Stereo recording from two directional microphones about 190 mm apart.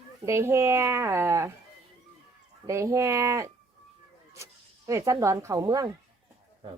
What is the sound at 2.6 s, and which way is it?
Speech, 15° right (ahead or behind).